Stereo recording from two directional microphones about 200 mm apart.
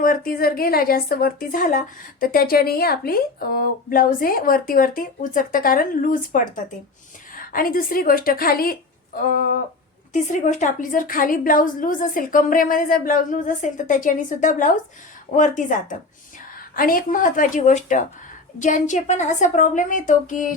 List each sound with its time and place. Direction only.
0.0 s speech: 45° left (ahead or behind)
10.1 s a woman's voice: 40° left (ahead or behind)